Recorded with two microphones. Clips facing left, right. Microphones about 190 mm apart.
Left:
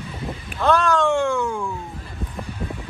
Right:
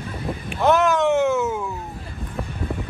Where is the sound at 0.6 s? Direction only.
20° right (ahead or behind).